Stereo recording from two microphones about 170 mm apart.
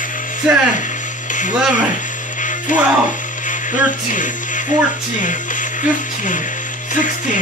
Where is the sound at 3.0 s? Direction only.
50° left (ahead or behind).